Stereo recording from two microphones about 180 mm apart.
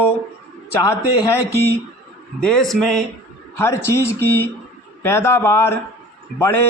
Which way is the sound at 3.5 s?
15° left (ahead or behind).